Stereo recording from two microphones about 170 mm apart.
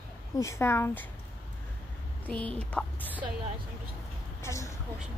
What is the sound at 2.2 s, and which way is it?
Speech, 5° left (ahead or behind).